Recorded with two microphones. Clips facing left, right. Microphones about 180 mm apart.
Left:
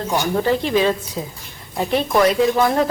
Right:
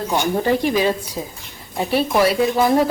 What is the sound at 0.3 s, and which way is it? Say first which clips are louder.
Speech: left 1 dB; 15° right (ahead or behind).